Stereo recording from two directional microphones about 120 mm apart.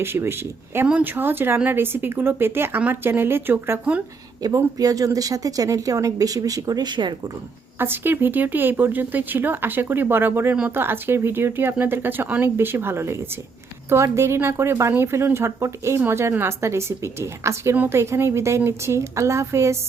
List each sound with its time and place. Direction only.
0.0 s a woman's voice: 20° right (ahead or behind)
4.4 s a woman's voice: 30° right (ahead or behind)
7.8 s a woman's voice: 20° right (ahead or behind)